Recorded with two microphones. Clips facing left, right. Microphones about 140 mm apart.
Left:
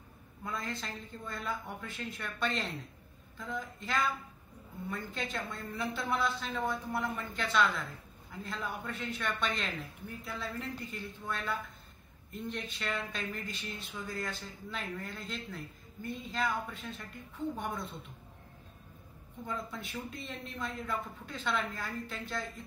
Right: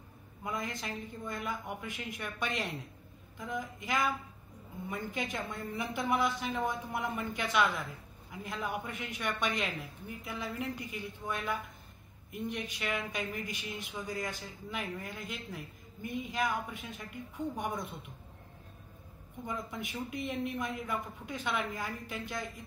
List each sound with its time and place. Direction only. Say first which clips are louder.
0.4 s speech: right 1 dB; 15° right (ahead or behind)
19.4 s speech: right 1 dB; 15° right (ahead or behind)